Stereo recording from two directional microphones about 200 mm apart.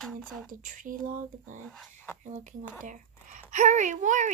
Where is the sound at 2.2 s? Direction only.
35° right (ahead or behind).